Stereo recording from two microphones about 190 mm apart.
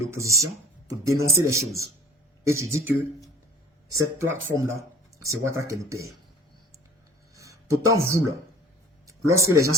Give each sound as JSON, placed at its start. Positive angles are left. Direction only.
{"t": 0.1, "sound": "speech", "side_deg": -15}
{"t": 4.2, "sound": "speech", "side_deg": -15}
{"t": 7.3, "sound": "music", "side_deg": -15}
{"t": 9.0, "sound": "speech", "side_deg": -15}